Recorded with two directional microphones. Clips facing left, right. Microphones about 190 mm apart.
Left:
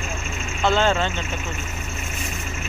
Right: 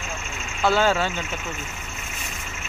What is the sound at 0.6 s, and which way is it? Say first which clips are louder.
Speech: even; 5° right (ahead or behind).